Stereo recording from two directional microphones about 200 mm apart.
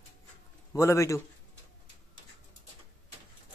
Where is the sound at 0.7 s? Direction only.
15° left (ahead or behind).